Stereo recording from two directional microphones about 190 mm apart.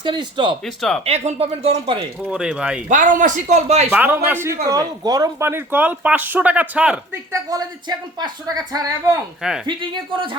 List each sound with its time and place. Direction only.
0.0 s speech: 25° right (ahead or behind)
0.6 s speech: centre (ahead or behind)
1.0 s speech: 35° right (ahead or behind)
2.3 s speech: 5° right (ahead or behind)
2.9 s speech: 45° right (ahead or behind)
3.8 s speech: 10° right (ahead or behind)
7.5 s speech: 20° right (ahead or behind)